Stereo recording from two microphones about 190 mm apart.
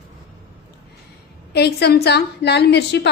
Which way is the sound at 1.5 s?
60° left (ahead or behind).